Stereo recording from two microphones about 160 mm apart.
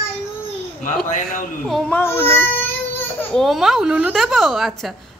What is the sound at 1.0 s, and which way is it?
Speech, 55° left (ahead or behind).